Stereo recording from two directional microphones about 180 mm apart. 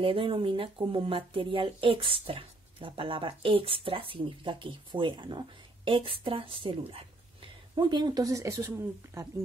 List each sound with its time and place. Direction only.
0.0 s a woman's voice: 30° right (ahead or behind)